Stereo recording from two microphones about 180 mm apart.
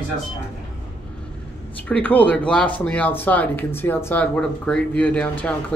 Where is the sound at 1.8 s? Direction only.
10° left (ahead or behind).